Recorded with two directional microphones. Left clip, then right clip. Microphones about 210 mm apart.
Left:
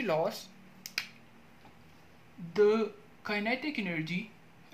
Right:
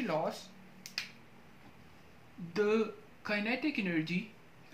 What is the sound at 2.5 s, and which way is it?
Speech, 30° left (ahead or behind).